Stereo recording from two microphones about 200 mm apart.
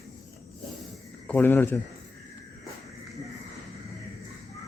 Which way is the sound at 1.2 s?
10° left (ahead or behind).